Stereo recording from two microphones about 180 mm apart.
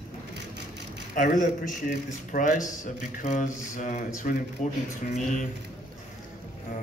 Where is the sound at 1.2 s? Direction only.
45° left (ahead or behind).